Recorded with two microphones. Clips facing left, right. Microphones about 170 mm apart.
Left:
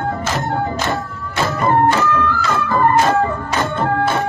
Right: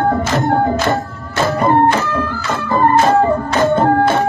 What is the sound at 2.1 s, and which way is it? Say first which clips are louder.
Organ: left 1 dB; 30° right (ahead or behind).